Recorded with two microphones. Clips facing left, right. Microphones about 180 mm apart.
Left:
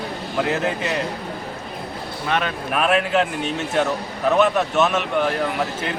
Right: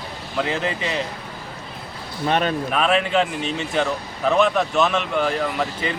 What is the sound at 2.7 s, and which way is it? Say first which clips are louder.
Speech: left 1 dB; 5° left (ahead or behind).